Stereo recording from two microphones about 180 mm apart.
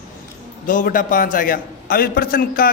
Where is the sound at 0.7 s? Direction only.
50° left (ahead or behind).